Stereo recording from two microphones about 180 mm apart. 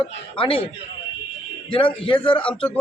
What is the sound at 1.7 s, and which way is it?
Speech, 30° left (ahead or behind).